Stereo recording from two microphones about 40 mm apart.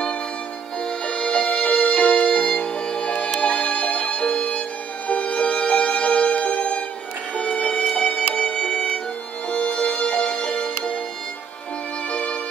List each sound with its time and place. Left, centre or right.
0.8 s violin: left
5.0 s music: left
9.5 s violin: left
12.1 s violin: left